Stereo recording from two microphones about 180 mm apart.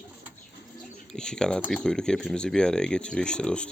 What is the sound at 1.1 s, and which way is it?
Speech, 5° left (ahead or behind).